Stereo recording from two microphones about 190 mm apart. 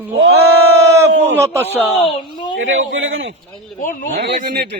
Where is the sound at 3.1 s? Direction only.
90° right.